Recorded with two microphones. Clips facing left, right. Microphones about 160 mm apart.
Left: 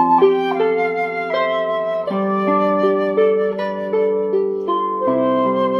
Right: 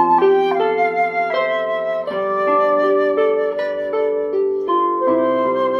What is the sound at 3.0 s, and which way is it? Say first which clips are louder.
Flute: left 1 dB; 20° left (ahead or behind).